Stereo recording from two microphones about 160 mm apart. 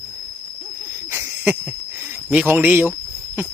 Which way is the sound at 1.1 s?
15° right (ahead or behind).